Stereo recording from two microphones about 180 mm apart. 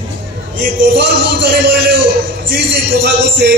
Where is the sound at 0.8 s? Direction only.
70° right (ahead or behind).